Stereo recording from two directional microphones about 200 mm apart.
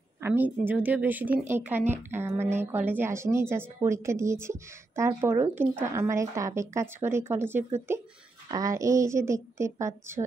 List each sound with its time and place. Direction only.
0.2 s a woman's voice: 10° right (ahead or behind)